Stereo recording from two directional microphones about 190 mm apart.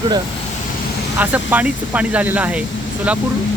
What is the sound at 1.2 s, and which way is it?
Speech, 10° right (ahead or behind).